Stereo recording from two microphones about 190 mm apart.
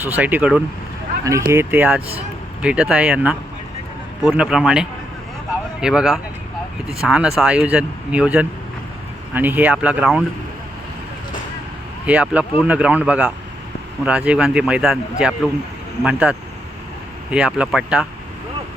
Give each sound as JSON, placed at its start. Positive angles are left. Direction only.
{"t": 0.0, "sound": "speech", "side_deg": -10}
{"t": 12.0, "sound": "speech", "side_deg": -5}
{"t": 17.3, "sound": "speech", "side_deg": -5}